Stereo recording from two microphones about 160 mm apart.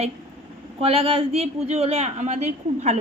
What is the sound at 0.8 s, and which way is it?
Speech, 35° right (ahead or behind).